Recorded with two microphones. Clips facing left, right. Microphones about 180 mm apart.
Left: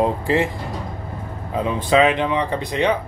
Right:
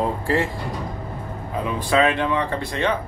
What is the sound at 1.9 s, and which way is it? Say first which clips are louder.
Speech: left 3 dB; 20° left (ahead or behind).